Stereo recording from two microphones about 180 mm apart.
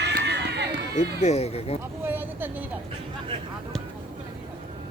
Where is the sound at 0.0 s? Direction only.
70° right (ahead or behind).